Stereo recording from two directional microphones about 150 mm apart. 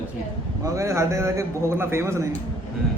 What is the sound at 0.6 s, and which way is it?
A man's voice, 20° right (ahead or behind).